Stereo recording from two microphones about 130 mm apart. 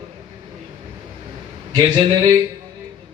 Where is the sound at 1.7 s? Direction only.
35° right (ahead or behind).